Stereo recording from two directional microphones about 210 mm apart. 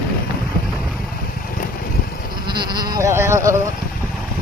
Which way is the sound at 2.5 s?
20° right (ahead or behind).